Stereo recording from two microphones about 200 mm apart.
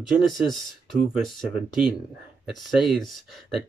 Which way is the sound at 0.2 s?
Centre (ahead or behind).